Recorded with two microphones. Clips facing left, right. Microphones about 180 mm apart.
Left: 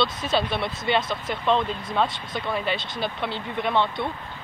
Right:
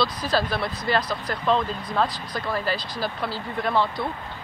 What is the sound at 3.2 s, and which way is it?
Speech, centre (ahead or behind).